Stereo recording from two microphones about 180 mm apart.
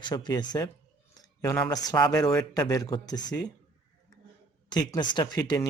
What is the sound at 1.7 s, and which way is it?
Speech, 20° left (ahead or behind).